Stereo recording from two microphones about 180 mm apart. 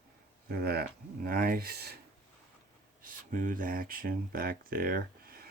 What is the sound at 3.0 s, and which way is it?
Speech, 50° right (ahead or behind).